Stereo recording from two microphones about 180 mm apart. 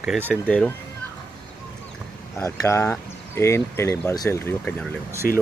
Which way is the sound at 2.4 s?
15° left (ahead or behind).